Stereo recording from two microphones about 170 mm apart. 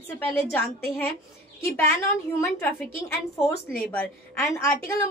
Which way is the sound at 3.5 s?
10° left (ahead or behind).